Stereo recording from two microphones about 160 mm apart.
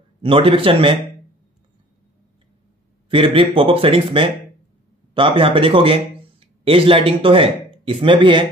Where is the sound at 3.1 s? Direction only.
35° right (ahead or behind).